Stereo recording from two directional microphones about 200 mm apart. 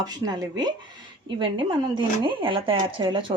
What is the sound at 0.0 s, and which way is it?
Speech, 20° right (ahead or behind).